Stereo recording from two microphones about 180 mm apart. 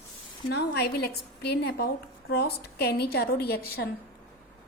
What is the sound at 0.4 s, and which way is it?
A woman's voice, 65° left (ahead or behind).